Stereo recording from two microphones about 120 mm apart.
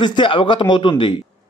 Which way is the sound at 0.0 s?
40° left (ahead or behind).